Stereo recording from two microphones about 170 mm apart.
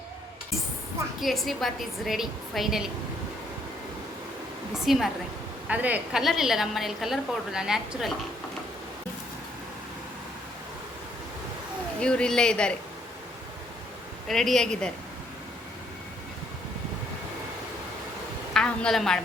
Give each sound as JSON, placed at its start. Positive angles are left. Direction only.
{"t": 1.2, "sound": "a woman's voice", "side_deg": 0}
{"t": 4.7, "sound": "a woman's voice", "side_deg": 0}
{"t": 11.9, "sound": "a woman's voice", "side_deg": 5}
{"t": 14.3, "sound": "a woman's voice", "side_deg": 0}
{"t": 18.5, "sound": "a woman's voice", "side_deg": 5}